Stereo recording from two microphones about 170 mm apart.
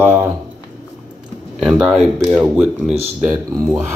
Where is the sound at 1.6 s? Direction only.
5° right (ahead or behind).